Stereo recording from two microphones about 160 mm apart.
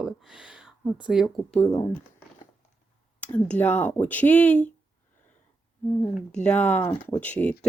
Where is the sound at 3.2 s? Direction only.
10° left (ahead or behind).